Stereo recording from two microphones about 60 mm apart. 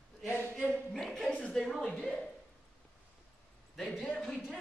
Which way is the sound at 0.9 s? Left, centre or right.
Centre.